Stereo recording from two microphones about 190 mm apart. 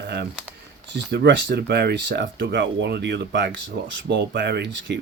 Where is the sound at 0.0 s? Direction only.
60° right (ahead or behind).